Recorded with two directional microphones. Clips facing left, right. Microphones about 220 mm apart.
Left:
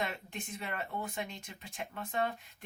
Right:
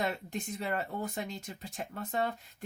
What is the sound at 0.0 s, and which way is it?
Speech, 40° right (ahead or behind).